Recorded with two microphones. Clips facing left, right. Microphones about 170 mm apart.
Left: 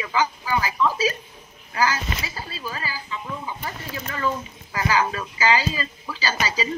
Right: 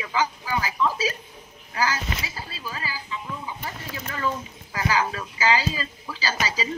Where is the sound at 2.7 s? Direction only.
55° left (ahead or behind).